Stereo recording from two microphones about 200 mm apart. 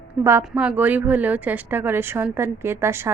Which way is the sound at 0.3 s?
10° right (ahead or behind).